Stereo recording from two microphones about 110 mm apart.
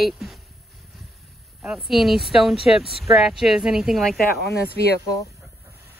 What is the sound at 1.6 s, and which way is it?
Speech, 5° right (ahead or behind).